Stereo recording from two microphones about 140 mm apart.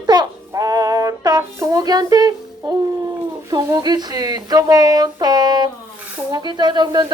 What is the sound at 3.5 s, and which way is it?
Speech, 30° right (ahead or behind).